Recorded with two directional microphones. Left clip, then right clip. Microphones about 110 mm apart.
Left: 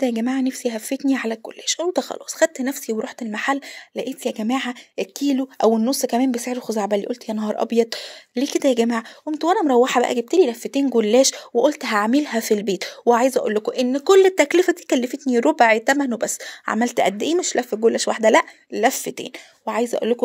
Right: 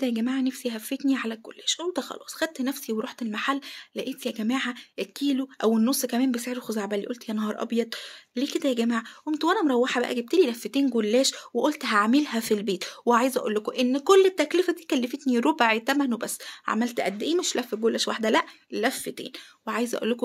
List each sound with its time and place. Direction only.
0.0 s speech: 45° left (ahead or behind)
9.3 s speech: 25° left (ahead or behind)
9.7 s speech: 45° left (ahead or behind)
10.3 s speech: 25° left (ahead or behind)
11.0 s speech: 45° left (ahead or behind)
11.5 s speech: 30° left (ahead or behind)
14.2 s speech: 65° left (ahead or behind); by 15.1 s 50° left (ahead or behind)
15.2 s speech: 30° left (ahead or behind)
16.8 s speech: 65° left (ahead or behind)
17.4 s speech: 30° left (ahead or behind)
19.6 s speech: 25° left (ahead or behind)